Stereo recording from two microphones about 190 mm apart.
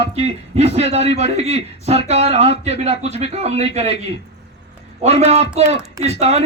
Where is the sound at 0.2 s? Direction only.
35° right (ahead or behind).